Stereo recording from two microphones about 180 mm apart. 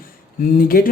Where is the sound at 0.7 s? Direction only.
55° left (ahead or behind).